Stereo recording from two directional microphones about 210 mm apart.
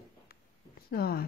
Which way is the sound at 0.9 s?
45° left (ahead or behind).